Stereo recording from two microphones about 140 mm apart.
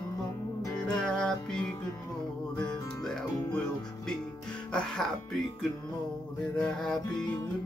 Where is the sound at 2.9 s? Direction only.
5° left (ahead or behind).